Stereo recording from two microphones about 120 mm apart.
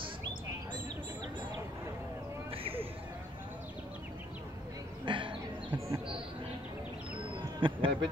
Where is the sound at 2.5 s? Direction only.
50° right (ahead or behind).